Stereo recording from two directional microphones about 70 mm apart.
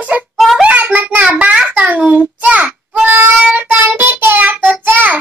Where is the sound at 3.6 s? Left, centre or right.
Right.